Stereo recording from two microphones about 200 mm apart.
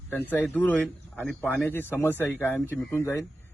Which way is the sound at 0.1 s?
10° left (ahead or behind).